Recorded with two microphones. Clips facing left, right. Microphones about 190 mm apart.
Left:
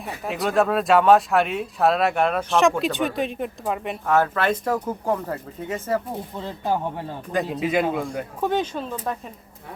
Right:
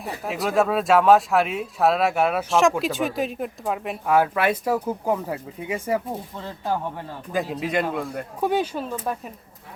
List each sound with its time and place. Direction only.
0.0 s speech: centre (ahead or behind)
6.3 s speech: 15° left (ahead or behind)
7.3 s speech: centre (ahead or behind)